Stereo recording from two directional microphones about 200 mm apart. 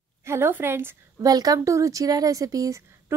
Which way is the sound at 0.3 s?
10° right (ahead or behind).